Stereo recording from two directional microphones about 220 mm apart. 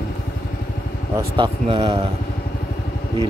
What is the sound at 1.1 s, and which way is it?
Speech, 20° right (ahead or behind).